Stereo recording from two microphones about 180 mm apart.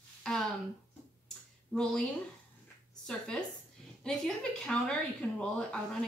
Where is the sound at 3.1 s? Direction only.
5° left (ahead or behind).